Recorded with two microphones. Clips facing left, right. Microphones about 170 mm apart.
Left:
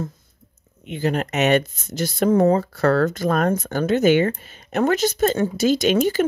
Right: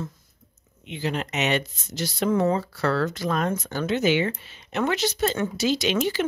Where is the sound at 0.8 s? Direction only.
50° left (ahead or behind).